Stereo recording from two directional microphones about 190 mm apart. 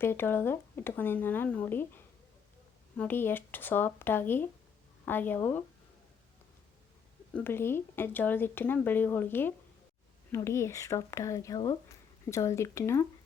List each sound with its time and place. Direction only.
0.0 s speech: 10° left (ahead or behind)
3.0 s speech: 10° left (ahead or behind)
7.3 s speech: 10° left (ahead or behind)